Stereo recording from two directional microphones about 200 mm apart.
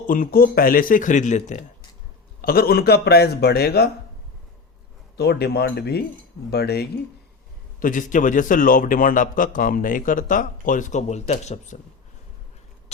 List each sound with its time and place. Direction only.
0.1 s speech: 45° left (ahead or behind)
2.4 s speech: 50° left (ahead or behind)
5.1 s speech: 55° left (ahead or behind)
7.8 s a man's voice: 40° left (ahead or behind)